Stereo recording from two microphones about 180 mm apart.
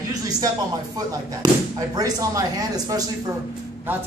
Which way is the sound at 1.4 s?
20° right (ahead or behind).